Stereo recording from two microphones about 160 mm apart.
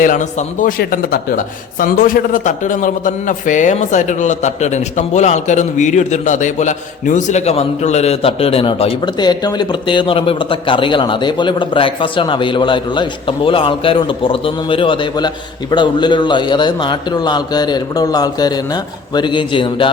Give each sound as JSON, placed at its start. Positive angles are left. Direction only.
{"t": 0.0, "sound": "a man's voice", "side_deg": 50}
{"t": 0.8, "sound": "a man's voice", "side_deg": 65}